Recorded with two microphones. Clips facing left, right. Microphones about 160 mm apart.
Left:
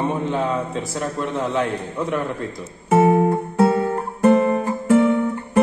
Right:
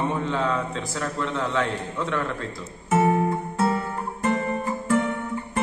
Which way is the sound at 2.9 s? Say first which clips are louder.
Left 6 dB; 55° left (ahead or behind).